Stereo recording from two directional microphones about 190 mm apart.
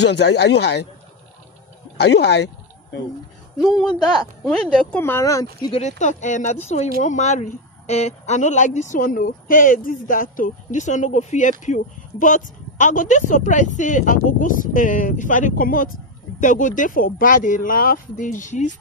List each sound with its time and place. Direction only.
0.0 s speech: 65° left (ahead or behind)
2.0 s a sound: 60° left (ahead or behind)
3.6 s speech: centre (ahead or behind); by 5.7 s 20° left (ahead or behind)
5.7 s speech: 35° left (ahead or behind)